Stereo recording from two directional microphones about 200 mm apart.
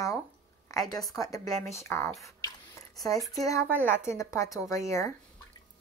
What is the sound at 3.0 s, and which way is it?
A woman's voice, 15° left (ahead or behind).